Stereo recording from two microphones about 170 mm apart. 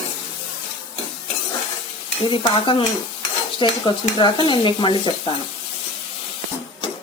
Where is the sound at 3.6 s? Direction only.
25° left (ahead or behind).